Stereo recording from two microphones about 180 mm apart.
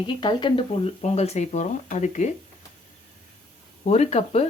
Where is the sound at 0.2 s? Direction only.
25° left (ahead or behind); by 2.3 s 40° left (ahead or behind).